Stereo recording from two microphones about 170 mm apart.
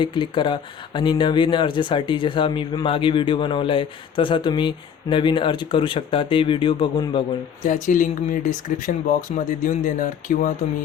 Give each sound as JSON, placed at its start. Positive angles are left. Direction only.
{"t": 0.0, "sound": "speech", "side_deg": 30}
{"t": 7.6, "sound": "speech", "side_deg": 50}